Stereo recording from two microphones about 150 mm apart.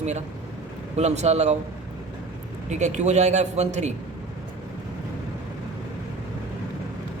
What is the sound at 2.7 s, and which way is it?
A man's voice, 50° right (ahead or behind).